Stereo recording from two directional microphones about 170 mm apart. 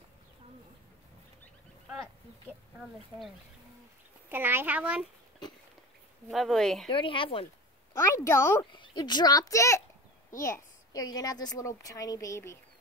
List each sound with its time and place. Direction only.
4.3 s a child's voice: 10° right (ahead or behind)
6.2 s speech: centre (ahead or behind)
6.9 s speech: 30° left (ahead or behind)
8.0 s a woman's voice: 15° left (ahead or behind)
8.7 s a woman's voice: 25° left (ahead or behind)